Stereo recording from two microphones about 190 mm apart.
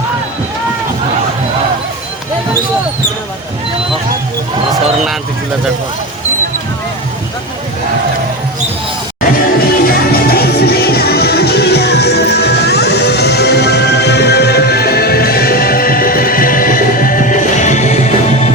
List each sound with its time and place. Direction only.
9.7 s music: 50° left (ahead or behind)